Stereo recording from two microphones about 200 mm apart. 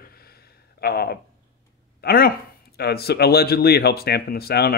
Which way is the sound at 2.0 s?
50° left (ahead or behind).